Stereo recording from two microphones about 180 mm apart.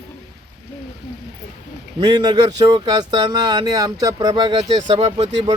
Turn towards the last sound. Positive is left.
turn(degrees=-35)  # may be behind; listen again after turning